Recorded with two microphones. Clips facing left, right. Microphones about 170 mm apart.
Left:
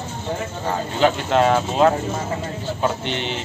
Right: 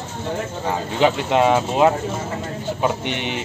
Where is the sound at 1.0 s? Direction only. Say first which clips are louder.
Even; 10° right (ahead or behind).